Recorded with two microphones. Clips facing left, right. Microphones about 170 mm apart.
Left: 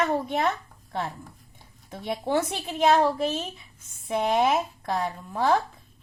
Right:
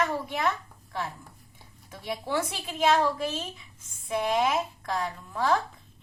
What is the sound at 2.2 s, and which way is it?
A woman's voice, 30° left (ahead or behind).